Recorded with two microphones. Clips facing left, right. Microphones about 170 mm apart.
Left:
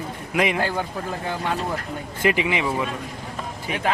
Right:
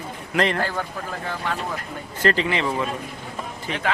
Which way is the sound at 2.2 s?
15° left (ahead or behind).